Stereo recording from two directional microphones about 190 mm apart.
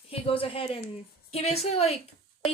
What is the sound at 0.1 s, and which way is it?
Speech, 30° left (ahead or behind).